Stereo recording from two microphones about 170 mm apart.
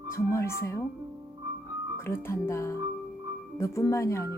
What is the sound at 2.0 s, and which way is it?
Speech, 15° left (ahead or behind).